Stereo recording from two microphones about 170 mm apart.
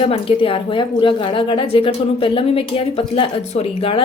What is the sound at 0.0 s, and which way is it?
A woman's voice, 30° left (ahead or behind).